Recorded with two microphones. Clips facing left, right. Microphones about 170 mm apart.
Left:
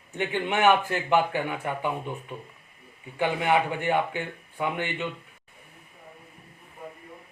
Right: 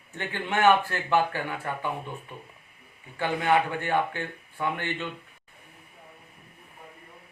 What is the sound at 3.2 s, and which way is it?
Speech, 15° left (ahead or behind).